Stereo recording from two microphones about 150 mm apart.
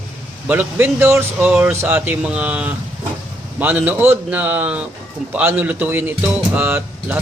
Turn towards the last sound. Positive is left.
turn(degrees=-15)  # may be behind; listen again after turning